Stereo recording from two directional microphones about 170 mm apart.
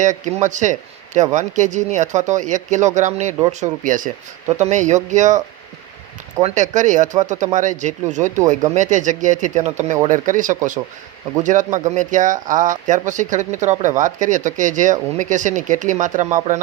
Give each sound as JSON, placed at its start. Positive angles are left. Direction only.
{"t": 0.0, "sound": "speech", "side_deg": -45}
{"t": 6.4, "sound": "speech", "side_deg": -45}